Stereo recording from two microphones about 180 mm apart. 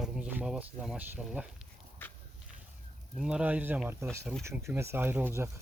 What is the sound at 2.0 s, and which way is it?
Horse, 10° left (ahead or behind).